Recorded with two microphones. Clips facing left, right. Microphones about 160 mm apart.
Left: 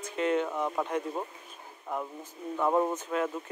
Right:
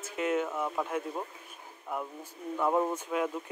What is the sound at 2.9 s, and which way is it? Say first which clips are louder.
Speech: left 1 dB; 10° right (ahead or behind).